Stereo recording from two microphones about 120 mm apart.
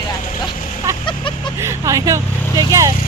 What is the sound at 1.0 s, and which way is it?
Vehicle, 40° left (ahead or behind).